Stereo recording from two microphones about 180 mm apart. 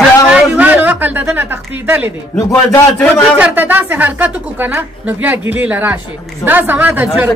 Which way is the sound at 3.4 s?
10° right (ahead or behind).